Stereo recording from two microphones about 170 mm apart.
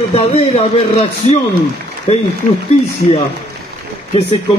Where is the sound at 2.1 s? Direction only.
40° left (ahead or behind).